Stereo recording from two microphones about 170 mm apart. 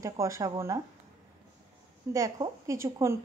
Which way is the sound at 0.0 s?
20° right (ahead or behind).